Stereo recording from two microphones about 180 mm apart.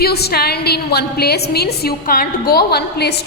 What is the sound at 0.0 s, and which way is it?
A woman's voice, 60° left (ahead or behind).